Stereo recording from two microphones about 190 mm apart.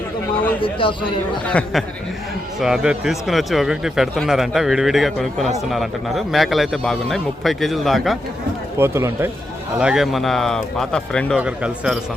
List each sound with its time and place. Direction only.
0.6 s a man's voice: 25° left (ahead or behind)
1.5 s speech: 5° left (ahead or behind)
8.8 s speech: 15° right (ahead or behind)
9.7 s speech: 5° right (ahead or behind)